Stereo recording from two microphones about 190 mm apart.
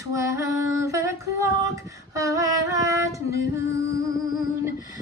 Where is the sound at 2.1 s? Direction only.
15° right (ahead or behind).